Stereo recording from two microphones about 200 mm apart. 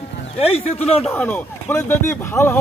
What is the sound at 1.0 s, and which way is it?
Speech, 10° left (ahead or behind).